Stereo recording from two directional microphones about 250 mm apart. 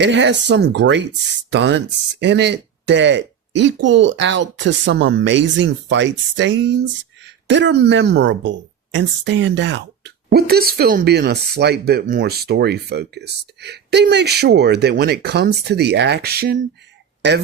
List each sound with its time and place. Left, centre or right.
0.0 s speech: right